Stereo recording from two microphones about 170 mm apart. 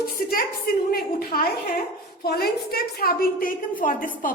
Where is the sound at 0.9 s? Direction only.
60° left (ahead or behind).